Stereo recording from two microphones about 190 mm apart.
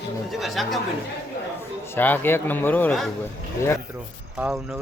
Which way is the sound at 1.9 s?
10° left (ahead or behind).